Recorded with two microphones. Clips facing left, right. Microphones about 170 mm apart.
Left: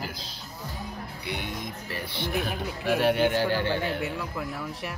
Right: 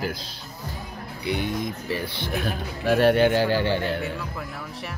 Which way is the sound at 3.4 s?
Centre (ahead or behind).